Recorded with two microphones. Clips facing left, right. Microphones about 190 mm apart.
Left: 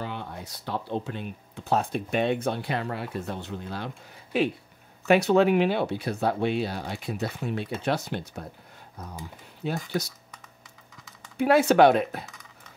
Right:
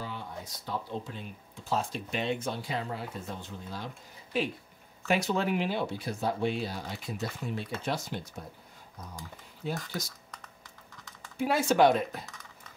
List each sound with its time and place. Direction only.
0.0 s speech: 65° left (ahead or behind)
9.6 s speech: 70° left (ahead or behind)
11.3 s speech: 65° left (ahead or behind)